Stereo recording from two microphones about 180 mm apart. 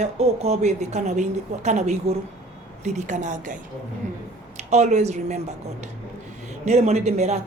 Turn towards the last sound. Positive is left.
turn(degrees=-40)  # may be behind; listen again after turning